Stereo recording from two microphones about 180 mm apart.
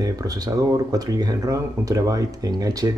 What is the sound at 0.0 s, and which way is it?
Speech, 20° right (ahead or behind).